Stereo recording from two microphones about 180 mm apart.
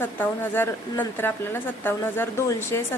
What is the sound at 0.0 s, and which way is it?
A woman's voice, 10° left (ahead or behind).